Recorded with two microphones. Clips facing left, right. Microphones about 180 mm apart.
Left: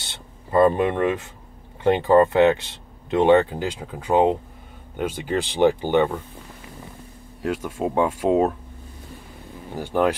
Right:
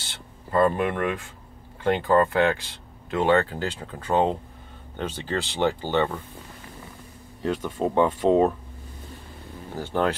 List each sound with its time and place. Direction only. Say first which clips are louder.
0.0 s speech: left 1 dB; 20° left (ahead or behind)
7.4 s speech: even; 10° left (ahead or behind)
9.8 s speech: left 4 dB; 10° left (ahead or behind)